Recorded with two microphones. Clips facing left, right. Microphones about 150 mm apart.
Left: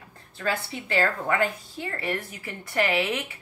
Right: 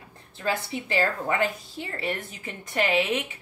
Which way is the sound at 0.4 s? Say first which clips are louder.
Right 1 dB; 20° right (ahead or behind).